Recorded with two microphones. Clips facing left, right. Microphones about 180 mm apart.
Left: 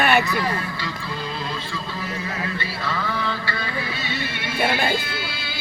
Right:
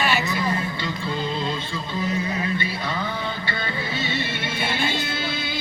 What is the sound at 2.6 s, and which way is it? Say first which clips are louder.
Music: even; 20° right (ahead or behind).